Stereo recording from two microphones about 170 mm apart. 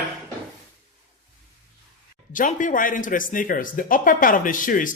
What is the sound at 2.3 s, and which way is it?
Speech, 50° left (ahead or behind).